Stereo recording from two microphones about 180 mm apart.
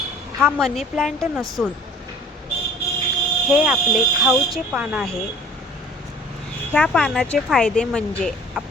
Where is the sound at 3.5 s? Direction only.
5° right (ahead or behind).